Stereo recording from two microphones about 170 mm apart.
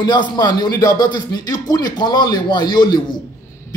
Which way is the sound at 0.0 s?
25° left (ahead or behind).